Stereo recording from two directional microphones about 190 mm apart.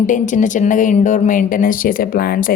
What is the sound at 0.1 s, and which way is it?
Speech, 40° left (ahead or behind).